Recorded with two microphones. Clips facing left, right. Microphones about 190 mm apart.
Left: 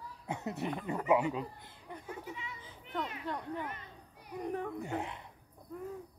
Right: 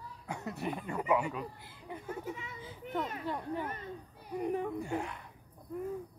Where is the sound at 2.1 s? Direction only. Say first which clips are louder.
Right 4 dB; 45° right (ahead or behind).